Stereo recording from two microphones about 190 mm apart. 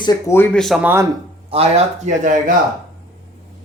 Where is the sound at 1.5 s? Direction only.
35° right (ahead or behind).